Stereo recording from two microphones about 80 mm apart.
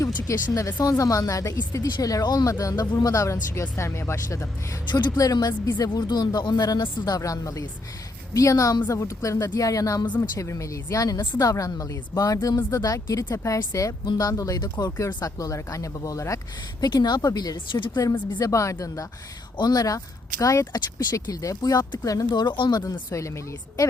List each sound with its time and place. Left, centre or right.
0.3 s a woman's voice: left
4.9 s speech: left
5.1 s a woman's voice: left
13.3 s a woman's voice: left
14.8 s a woman's voice: left
16.8 s a woman's voice: left
17.7 s speech: left
18.3 s a woman's voice: left
19.5 s a woman's voice: left
22.8 s a woman's voice: left